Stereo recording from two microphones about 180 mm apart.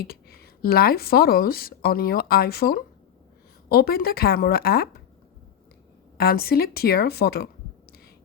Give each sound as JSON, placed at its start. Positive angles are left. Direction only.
{"t": 0.0, "sound": "speech", "side_deg": 60}
{"t": 6.1, "sound": "speech", "side_deg": 60}